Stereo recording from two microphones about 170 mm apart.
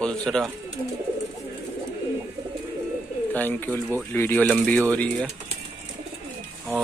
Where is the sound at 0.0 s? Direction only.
5° left (ahead or behind).